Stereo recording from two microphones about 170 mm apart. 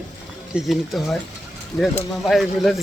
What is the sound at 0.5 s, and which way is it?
Speech, centre (ahead or behind).